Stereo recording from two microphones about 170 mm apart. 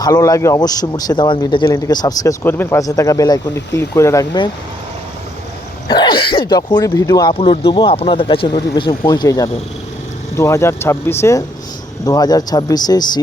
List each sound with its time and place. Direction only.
0.0 s a man's voice: 20° left (ahead or behind)
5.9 s a man's voice: 25° left (ahead or behind)
7.3 s a man's voice: 35° left (ahead or behind)